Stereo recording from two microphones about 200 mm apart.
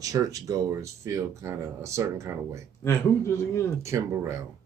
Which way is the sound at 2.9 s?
15° left (ahead or behind).